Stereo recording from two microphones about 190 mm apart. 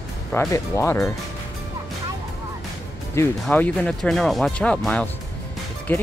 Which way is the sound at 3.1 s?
10° left (ahead or behind).